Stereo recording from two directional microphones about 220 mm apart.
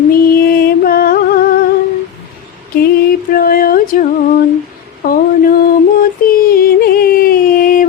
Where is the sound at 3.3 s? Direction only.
40° left (ahead or behind).